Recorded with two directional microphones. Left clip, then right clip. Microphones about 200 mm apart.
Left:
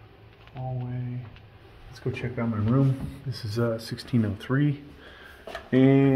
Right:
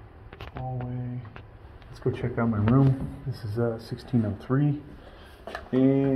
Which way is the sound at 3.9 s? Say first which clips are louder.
Left 1 dB; 40° left (ahead or behind).